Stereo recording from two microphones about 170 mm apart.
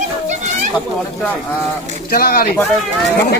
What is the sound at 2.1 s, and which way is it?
Speech, 60° left (ahead or behind).